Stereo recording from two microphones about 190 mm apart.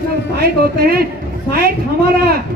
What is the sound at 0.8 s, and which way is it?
Speech, 55° right (ahead or behind).